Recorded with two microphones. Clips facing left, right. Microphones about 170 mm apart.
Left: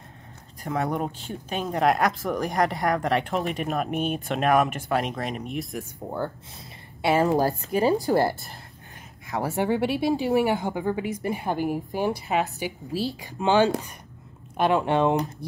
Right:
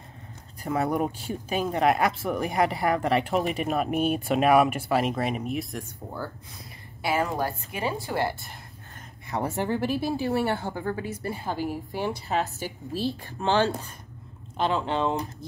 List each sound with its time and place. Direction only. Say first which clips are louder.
0.7 s speech: right 1 dB; 5° right (ahead or behind)
7.0 s a woman's voice: left 5 dB; 25° left (ahead or behind)
7.2 s speech: left 7 dB; 40° left (ahead or behind)
9.3 s speech: left 1 dB; centre (ahead or behind)
9.9 s a woman's voice: left 4 dB; 15° left (ahead or behind)